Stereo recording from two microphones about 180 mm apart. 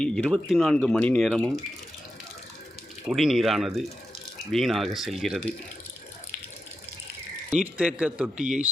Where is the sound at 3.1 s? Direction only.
Centre (ahead or behind).